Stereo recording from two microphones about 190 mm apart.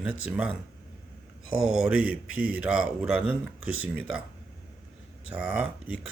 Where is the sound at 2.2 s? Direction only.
90° left.